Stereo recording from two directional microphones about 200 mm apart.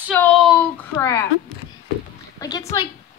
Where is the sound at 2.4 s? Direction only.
20° left (ahead or behind).